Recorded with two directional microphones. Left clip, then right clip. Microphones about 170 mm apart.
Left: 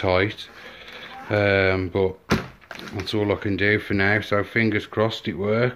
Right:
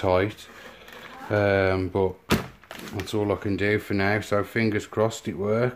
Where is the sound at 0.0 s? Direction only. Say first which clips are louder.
Left 2 dB; centre (ahead or behind).